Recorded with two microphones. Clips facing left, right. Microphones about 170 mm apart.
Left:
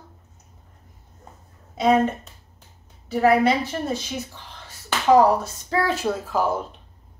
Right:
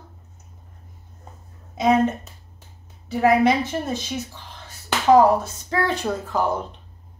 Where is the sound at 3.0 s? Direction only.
15° right (ahead or behind).